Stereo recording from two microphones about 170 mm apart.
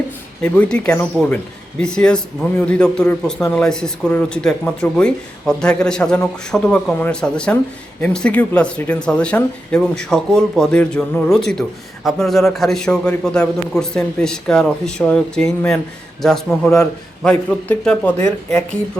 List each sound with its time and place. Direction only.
0.4 s speech: 5° left (ahead or behind)